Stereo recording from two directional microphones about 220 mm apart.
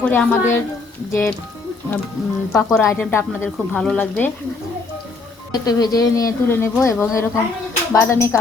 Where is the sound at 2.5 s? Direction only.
Centre (ahead or behind).